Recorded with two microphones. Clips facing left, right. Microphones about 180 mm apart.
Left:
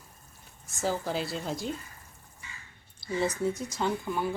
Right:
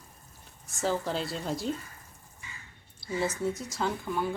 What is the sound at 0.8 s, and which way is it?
Speech, 5° left (ahead or behind).